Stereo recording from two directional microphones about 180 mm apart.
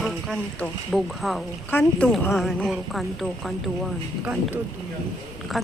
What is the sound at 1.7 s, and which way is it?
Speech, 10° left (ahead or behind).